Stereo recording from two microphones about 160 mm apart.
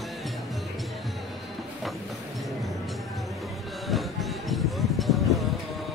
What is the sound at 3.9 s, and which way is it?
Music, centre (ahead or behind).